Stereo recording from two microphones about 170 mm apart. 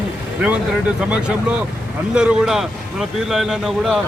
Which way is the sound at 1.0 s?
5° right (ahead or behind).